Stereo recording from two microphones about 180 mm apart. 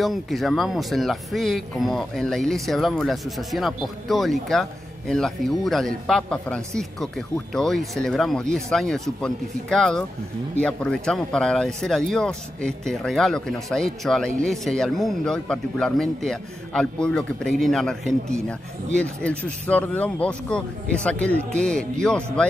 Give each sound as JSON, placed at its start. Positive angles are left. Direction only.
{"t": 0.0, "sound": "speech", "side_deg": 0}